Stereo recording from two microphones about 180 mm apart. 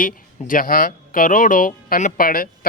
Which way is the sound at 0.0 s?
50° left (ahead or behind).